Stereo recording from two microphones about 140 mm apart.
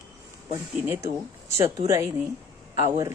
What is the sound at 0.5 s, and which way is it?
A woman's voice, 20° right (ahead or behind).